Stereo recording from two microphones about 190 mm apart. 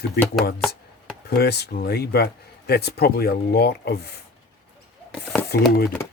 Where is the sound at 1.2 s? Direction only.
55° left (ahead or behind).